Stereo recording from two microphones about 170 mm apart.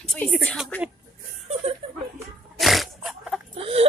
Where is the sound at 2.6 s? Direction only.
Centre (ahead or behind).